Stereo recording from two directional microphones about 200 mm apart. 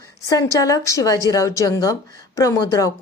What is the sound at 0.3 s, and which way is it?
A woman's voice, 15° left (ahead or behind).